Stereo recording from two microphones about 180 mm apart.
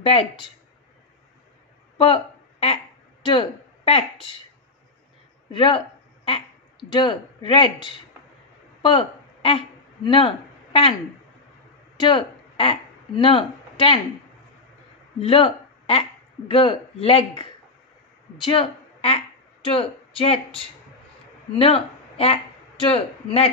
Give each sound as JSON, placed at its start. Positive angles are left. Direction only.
{"t": 0.0, "sound": "speech", "side_deg": 30}
{"t": 2.0, "sound": "a sound", "side_deg": 30}
{"t": 5.5, "sound": "speech", "side_deg": 30}
{"t": 12.0, "sound": "speech", "side_deg": 30}
{"t": 15.1, "sound": "a woman's voice", "side_deg": 30}